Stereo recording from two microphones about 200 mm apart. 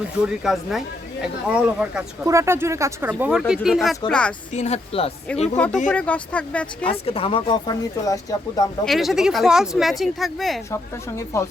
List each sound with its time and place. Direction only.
0.4 s speech: centre (ahead or behind)
4.5 s speech: 35° left (ahead or behind)
5.5 s speech: 5° left (ahead or behind)
7.0 s speech: 30° left (ahead or behind)
8.8 s speech: centre (ahead or behind)
11.3 s speech: 15° left (ahead or behind)